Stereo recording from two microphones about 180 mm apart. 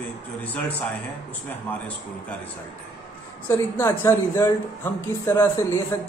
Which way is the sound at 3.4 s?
15° left (ahead or behind).